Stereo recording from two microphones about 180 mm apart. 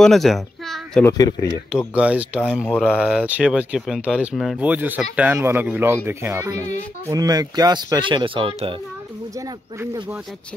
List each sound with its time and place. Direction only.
0.0 s a sound: centre (ahead or behind)
1.0 s speech: 20° left (ahead or behind)
2.0 s speech: 5° right (ahead or behind); by 8.7 s 30° right (ahead or behind)
9.3 s speech: 20° right (ahead or behind)